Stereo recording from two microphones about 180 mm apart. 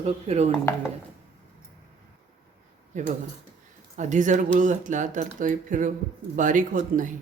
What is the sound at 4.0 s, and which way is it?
Speech, 45° right (ahead or behind).